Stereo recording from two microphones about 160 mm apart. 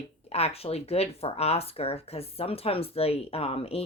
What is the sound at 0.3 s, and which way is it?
Speech, 40° left (ahead or behind).